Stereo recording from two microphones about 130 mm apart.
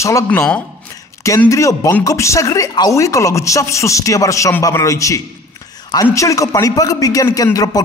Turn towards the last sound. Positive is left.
turn(degrees=30)  # may be behind; listen again after turning